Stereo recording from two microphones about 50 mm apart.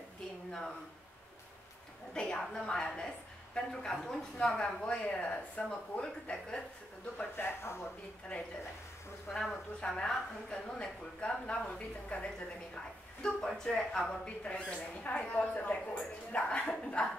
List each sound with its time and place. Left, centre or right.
2.1 s a woman's voice: centre
7.2 s speech: left
7.6 s speech: left
9.3 s a woman's voice: centre; by 12.3 s left
13.2 s a woman's voice: centre